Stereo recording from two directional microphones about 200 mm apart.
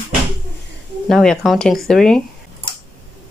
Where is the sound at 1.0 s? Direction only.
Centre (ahead or behind).